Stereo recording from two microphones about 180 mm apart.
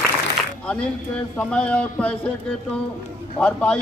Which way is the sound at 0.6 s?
5° left (ahead or behind).